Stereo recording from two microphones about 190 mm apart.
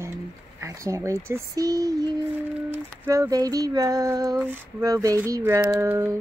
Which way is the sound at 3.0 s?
15° right (ahead or behind).